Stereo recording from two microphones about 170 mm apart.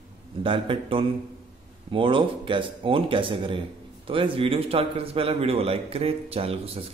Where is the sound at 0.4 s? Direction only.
30° right (ahead or behind).